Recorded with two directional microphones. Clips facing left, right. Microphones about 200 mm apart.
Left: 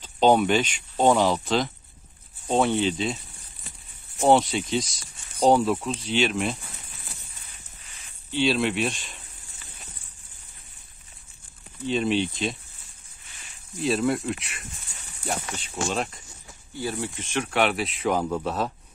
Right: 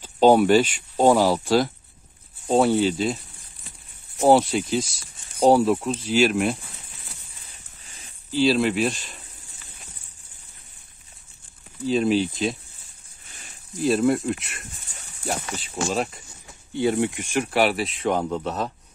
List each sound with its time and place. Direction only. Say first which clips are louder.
0.0 s speech: right 3 dB; 10° right (ahead or behind)
4.2 s speech: right 3 dB; 5° right (ahead or behind)
7.8 s a sound: right 3 dB; 35° right (ahead or behind)
8.3 s speech: right 4 dB; centre (ahead or behind)
11.8 s speech: right 3 dB; centre (ahead or behind)
13.3 s a sound: right 4 dB; 40° right (ahead or behind)
13.7 s speech: right 4 dB; centre (ahead or behind)
16.7 s speech: right 8 dB; 25° right (ahead or behind); by 18.7 s 5° left (ahead or behind)